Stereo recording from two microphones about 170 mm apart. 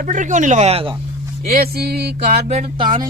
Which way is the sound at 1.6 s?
70° right (ahead or behind).